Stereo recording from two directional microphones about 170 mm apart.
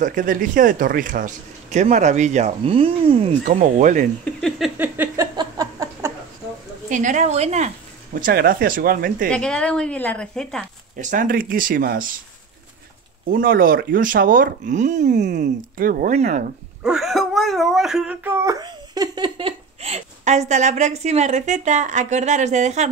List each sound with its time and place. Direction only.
0.0 s speech: 50° right (ahead or behind); by 3.3 s 35° right (ahead or behind)
3.4 s speech: 50° right (ahead or behind)
4.2 s a sound: 5° left (ahead or behind)
4.7 s a sound: 10° right (ahead or behind)
6.9 s speech: 50° right (ahead or behind)
9.3 s a woman's voice: 5° left (ahead or behind)
11.0 s speech: 50° right (ahead or behind)
13.3 s speech: 55° right (ahead or behind)
16.8 s speech: centre (ahead or behind); by 22.8 s 40° right (ahead or behind)